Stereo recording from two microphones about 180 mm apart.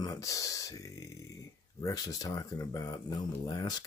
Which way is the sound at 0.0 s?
20° left (ahead or behind).